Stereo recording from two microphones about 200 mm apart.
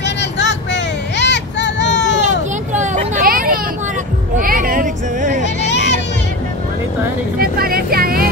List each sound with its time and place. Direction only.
0.0 s vehicle: 60° left (ahead or behind)
2.7 s vehicle: 35° right (ahead or behind)
4.4 s a sound: 45° right (ahead or behind)
5.6 s music: 60° left (ahead or behind)
7.3 s vehicle: 45° right (ahead or behind)